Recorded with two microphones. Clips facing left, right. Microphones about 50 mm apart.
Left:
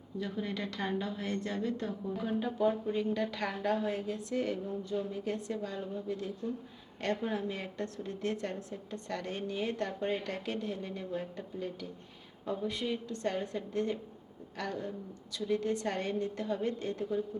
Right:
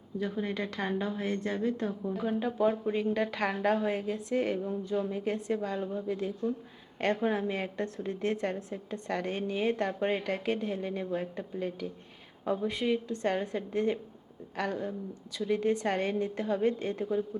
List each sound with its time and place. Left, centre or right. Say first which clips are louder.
0.2 s a woman's voice: right 4 dB; centre
2.6 s a woman's voice: right 2 dB; right
13.1 s a woman's voice: right 4 dB; right